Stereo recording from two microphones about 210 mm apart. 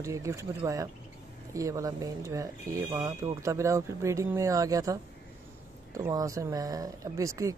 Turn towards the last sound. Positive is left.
turn(degrees=-15)  # may be behind; listen again after turning